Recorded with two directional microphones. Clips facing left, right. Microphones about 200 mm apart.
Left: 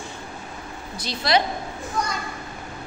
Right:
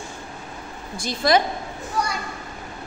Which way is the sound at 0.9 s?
50° right (ahead or behind).